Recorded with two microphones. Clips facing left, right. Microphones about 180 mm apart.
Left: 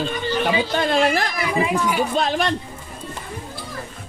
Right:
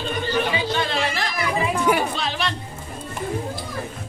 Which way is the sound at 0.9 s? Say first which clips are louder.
Left 6 dB; 50° left (ahead or behind).